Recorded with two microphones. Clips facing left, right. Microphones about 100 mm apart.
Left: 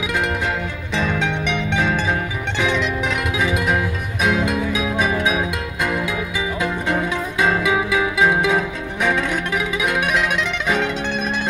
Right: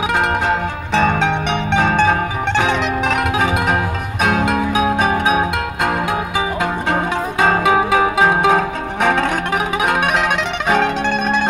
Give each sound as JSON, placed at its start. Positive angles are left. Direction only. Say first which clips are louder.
{"t": 0.1, "sound": "music", "louder": "right 4 dB", "side_deg": -55}